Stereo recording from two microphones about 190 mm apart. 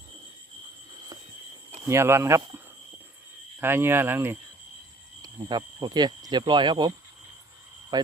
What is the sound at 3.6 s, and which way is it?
Speech, 10° right (ahead or behind).